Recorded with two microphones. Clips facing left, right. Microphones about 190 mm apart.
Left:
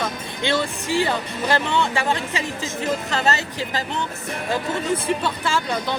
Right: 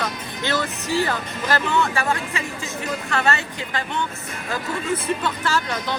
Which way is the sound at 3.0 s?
35° left (ahead or behind).